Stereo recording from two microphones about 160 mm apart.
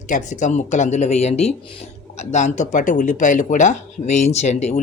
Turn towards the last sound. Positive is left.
turn(degrees=45)  # may be behind; listen again after turning